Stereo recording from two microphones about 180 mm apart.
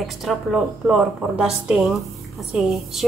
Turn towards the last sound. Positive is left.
turn(degrees=0)  # may be behind; listen again after turning